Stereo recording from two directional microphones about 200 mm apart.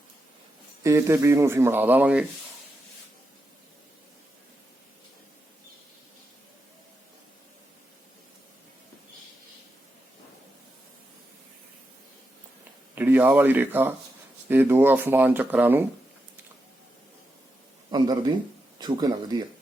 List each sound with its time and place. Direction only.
0.8 s speech: 15° right (ahead or behind)
13.0 s speech: 10° right (ahead or behind)
17.9 s speech: 20° right (ahead or behind)